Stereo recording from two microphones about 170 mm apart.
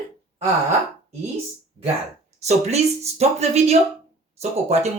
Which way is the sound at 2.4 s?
40° right (ahead or behind).